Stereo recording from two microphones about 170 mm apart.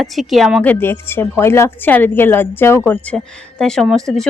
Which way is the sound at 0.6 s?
10° left (ahead or behind).